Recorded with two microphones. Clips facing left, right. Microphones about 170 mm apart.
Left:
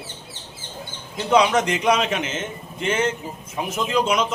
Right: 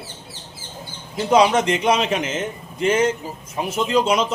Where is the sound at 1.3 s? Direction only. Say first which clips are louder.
Right 2 dB; 30° right (ahead or behind).